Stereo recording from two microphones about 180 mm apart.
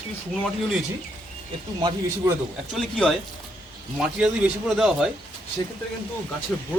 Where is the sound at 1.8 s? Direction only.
25° right (ahead or behind).